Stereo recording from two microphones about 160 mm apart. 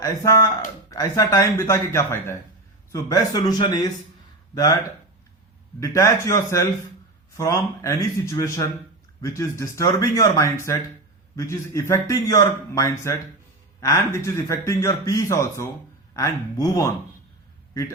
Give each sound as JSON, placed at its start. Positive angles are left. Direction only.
{"t": 0.9, "sound": "a man's voice", "side_deg": 20}
{"t": 5.8, "sound": "a man's voice", "side_deg": 20}